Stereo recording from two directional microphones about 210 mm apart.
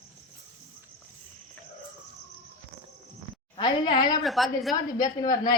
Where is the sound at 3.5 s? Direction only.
20° left (ahead or behind).